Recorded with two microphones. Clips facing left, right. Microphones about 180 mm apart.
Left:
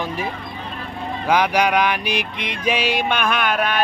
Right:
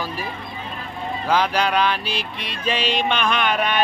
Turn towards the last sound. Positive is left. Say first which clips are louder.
# even
turn(degrees=5)  # may be behind; listen again after turning